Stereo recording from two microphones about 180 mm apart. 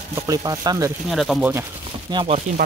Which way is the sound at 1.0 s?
Centre (ahead or behind).